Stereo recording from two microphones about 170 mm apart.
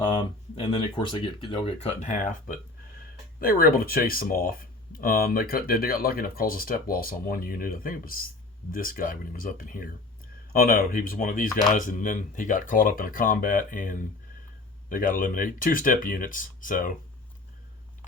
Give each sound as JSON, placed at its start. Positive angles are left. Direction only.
{"t": 0.1, "sound": "speech", "side_deg": 35}
{"t": 3.4, "sound": "speech", "side_deg": 60}